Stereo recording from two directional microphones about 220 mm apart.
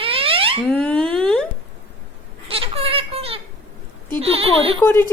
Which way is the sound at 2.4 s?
25° right (ahead or behind).